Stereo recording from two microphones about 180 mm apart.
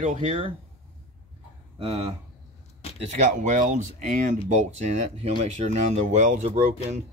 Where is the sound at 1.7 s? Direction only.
30° right (ahead or behind).